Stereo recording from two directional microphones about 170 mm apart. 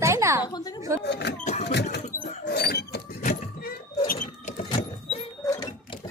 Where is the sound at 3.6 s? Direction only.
55° left (ahead or behind).